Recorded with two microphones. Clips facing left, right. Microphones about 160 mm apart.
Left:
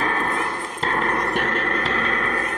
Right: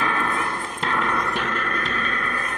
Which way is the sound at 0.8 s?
40° left (ahead or behind).